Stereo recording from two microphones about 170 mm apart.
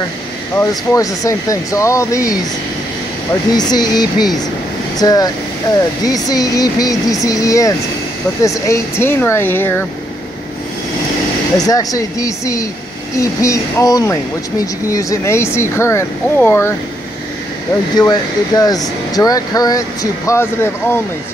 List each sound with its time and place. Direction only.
0.6 s speech: 20° left (ahead or behind)
3.5 s speech: 25° left (ahead or behind)
11.5 s speech: 20° left (ahead or behind)
17.9 s speech: 20° left (ahead or behind)